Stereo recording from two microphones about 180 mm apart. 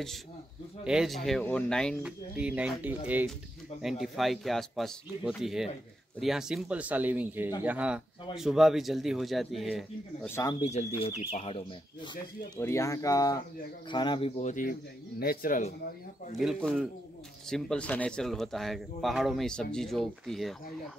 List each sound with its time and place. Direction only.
0.8 s speech: centre (ahead or behind)
2.0 s a man's voice: 5° right (ahead or behind)
10.2 s speech: 15° left (ahead or behind)
10.6 s speech: 35° left (ahead or behind)
12.5 s speech: 15° left (ahead or behind); by 14.5 s 30° left (ahead or behind)
14.5 s speech: 50° left (ahead or behind)
16.3 s speech: centre (ahead or behind)